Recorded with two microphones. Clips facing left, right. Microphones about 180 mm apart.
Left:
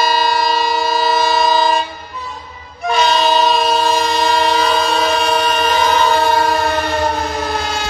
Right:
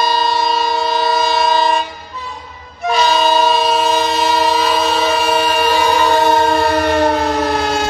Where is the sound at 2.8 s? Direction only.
5° right (ahead or behind).